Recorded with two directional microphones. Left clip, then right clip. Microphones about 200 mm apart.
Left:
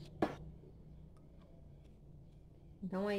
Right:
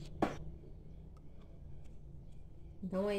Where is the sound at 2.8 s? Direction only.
30° left (ahead or behind).